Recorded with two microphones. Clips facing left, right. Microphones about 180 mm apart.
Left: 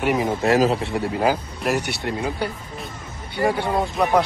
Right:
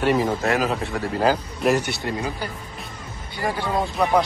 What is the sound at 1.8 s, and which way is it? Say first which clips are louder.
Speech: even; 65° left (ahead or behind).